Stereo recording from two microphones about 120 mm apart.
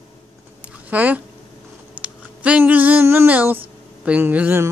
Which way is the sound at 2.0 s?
10° right (ahead or behind).